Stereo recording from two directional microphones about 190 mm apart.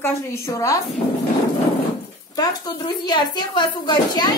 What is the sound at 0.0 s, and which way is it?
Speech, 15° left (ahead or behind).